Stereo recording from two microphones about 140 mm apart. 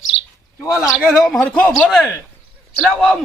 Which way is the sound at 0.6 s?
25° left (ahead or behind).